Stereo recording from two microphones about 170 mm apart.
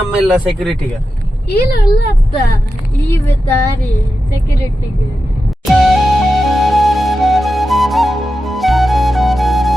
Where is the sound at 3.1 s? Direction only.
10° left (ahead or behind).